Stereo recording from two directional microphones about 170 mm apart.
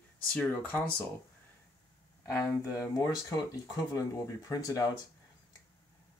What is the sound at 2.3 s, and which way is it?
Speech, 20° left (ahead or behind).